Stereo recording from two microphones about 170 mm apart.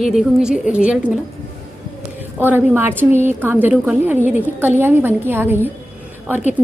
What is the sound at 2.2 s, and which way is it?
A woman's voice, 10° right (ahead or behind).